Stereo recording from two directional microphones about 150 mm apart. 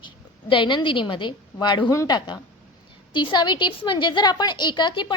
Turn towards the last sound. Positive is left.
turn(degrees=30)  # may be behind; listen again after turning